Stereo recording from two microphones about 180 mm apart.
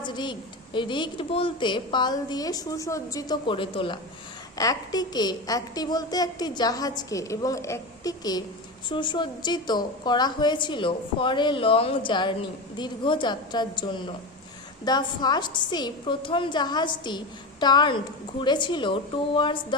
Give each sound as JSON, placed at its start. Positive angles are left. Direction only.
{"t": 0.0, "sound": "a woman's voice", "side_deg": 25}